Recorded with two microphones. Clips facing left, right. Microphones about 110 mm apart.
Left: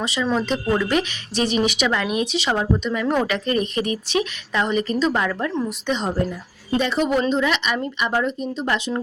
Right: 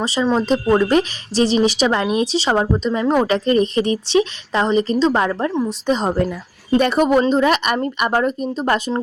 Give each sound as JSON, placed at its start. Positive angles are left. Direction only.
{"t": 0.0, "sound": "speech", "side_deg": -35}
{"t": 6.7, "sound": "speech", "side_deg": -55}